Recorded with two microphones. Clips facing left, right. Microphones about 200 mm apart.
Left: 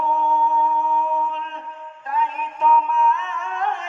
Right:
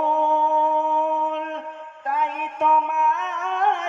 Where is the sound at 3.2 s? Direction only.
70° right (ahead or behind).